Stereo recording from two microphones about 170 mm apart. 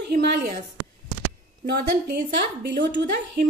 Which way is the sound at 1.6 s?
70° right (ahead or behind).